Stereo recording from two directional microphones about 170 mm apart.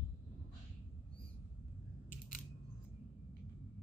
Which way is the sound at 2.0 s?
55° left (ahead or behind).